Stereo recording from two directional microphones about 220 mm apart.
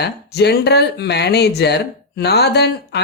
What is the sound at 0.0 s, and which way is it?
Speech, 50° left (ahead or behind).